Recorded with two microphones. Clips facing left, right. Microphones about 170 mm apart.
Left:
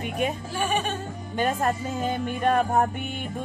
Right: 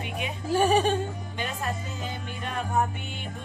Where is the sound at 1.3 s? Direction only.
50° left (ahead or behind).